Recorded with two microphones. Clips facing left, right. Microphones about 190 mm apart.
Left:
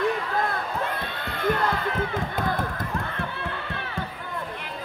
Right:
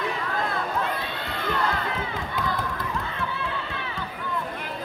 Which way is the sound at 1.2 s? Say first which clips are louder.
Left 6 dB; 55° left (ahead or behind).